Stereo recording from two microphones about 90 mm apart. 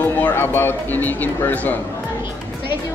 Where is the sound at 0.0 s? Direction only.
20° left (ahead or behind).